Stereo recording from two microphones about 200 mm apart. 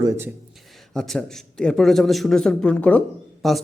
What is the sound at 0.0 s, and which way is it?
Speech, 15° right (ahead or behind).